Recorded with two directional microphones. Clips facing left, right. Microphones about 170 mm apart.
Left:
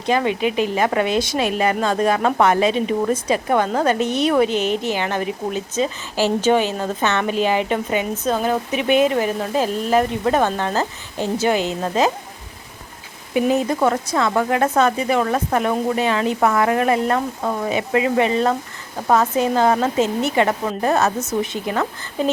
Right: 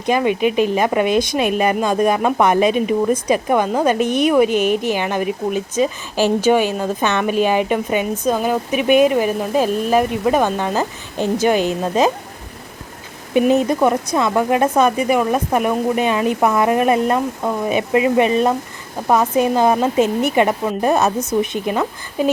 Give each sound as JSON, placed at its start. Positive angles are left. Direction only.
{"t": 0.0, "sound": "a woman's voice", "side_deg": -15}
{"t": 13.3, "sound": "a woman's voice", "side_deg": -20}